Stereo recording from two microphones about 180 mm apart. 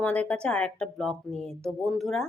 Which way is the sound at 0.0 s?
5° left (ahead or behind).